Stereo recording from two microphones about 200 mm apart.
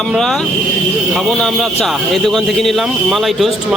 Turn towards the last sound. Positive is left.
turn(degrees=0)  # may be behind; listen again after turning